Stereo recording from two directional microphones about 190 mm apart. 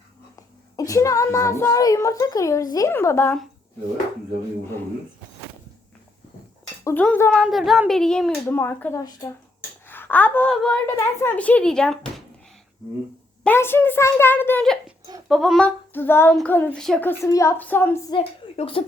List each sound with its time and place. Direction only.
0.3 s speech: 15° left (ahead or behind)
6.8 s a woman's voice: 10° left (ahead or behind)
13.4 s speech: 10° left (ahead or behind)
18.1 s a woman's voice: 30° left (ahead or behind)